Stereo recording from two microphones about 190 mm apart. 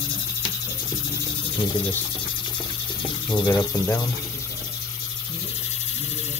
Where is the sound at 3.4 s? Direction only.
20° left (ahead or behind).